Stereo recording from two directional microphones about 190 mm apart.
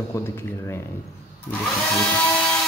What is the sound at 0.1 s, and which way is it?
Speech, 15° left (ahead or behind).